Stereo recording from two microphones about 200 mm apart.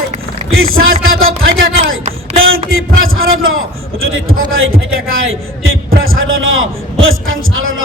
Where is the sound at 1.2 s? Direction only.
80° right.